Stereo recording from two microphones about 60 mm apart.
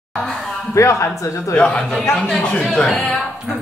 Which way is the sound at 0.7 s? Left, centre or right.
Left.